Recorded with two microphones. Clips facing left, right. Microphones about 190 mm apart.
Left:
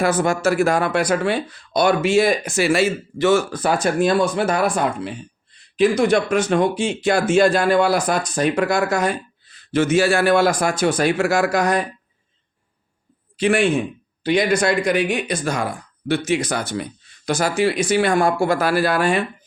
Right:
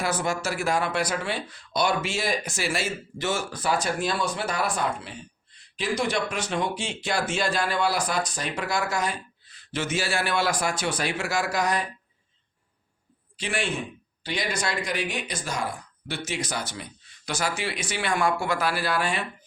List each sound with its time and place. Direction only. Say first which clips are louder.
0.0 s speech: left 9 dB; 50° left (ahead or behind)
13.3 s speech: left 12 dB; 60° left (ahead or behind)
17.2 s speech: left 10 dB; 45° left (ahead or behind)